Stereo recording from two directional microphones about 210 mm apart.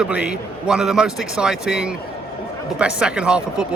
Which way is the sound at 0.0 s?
5° right (ahead or behind).